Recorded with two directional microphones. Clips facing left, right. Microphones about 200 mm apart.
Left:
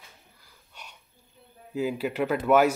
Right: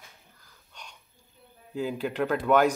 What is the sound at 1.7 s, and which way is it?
Speech, 5° left (ahead or behind).